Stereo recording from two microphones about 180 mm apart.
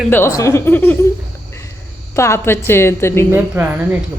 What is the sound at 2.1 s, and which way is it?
A woman's voice, 15° left (ahead or behind).